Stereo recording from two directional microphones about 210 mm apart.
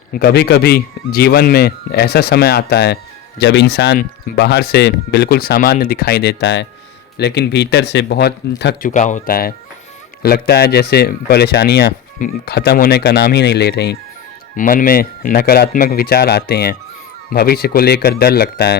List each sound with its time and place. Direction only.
0.1 s speech: 45° left (ahead or behind)
8.9 s speech: 35° left (ahead or behind)
14.5 s speech: 40° left (ahead or behind)